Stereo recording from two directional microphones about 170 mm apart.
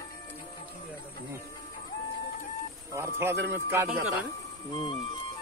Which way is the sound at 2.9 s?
15° right (ahead or behind).